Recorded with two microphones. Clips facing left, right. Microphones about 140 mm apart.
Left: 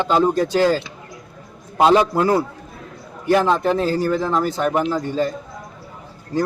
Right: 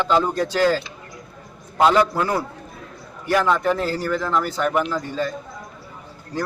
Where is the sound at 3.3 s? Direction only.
25° left (ahead or behind).